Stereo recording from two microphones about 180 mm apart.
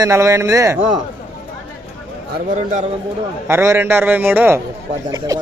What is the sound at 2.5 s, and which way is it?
Speech, 40° right (ahead or behind).